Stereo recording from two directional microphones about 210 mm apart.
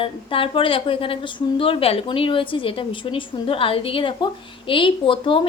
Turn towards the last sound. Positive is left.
turn(degrees=25)  # may be behind; listen again after turning